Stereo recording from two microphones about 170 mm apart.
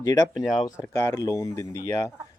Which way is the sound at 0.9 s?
15° left (ahead or behind).